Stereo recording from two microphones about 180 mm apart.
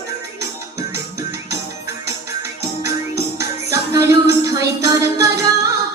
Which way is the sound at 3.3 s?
15° right (ahead or behind).